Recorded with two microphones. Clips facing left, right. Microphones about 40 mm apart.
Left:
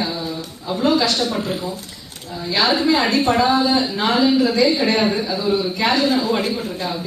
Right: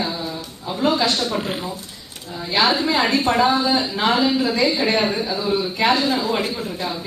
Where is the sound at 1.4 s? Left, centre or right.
Right.